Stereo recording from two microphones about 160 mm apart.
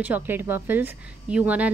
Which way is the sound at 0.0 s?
10° right (ahead or behind).